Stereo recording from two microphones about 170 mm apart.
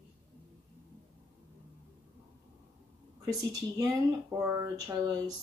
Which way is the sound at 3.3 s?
20° right (ahead or behind).